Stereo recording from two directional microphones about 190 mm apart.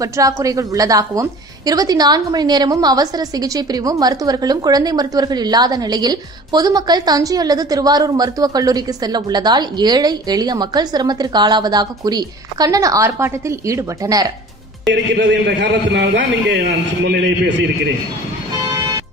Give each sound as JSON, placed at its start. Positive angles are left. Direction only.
{"t": 0.0, "sound": "a woman's voice", "side_deg": -15}
{"t": 15.1, "sound": "a man's voice", "side_deg": -65}